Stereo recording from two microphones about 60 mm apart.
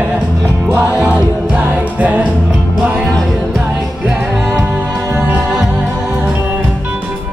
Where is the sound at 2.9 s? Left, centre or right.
Centre.